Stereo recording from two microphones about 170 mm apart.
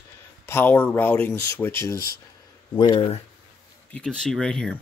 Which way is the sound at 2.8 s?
30° left (ahead or behind).